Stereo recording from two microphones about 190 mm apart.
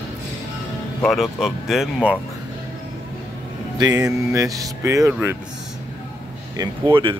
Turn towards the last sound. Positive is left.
turn(degrees=-25)  # may be behind; listen again after turning